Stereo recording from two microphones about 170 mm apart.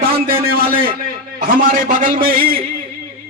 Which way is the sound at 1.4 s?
55° right (ahead or behind).